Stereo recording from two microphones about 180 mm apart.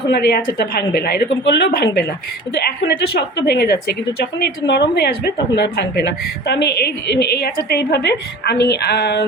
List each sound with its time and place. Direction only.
0.1 s a woman's voice: 60° left (ahead or behind)